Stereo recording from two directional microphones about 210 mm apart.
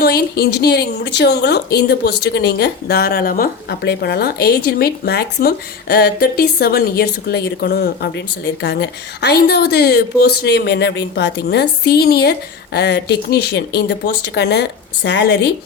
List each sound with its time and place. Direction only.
0.0 s a woman's voice: 50° left (ahead or behind)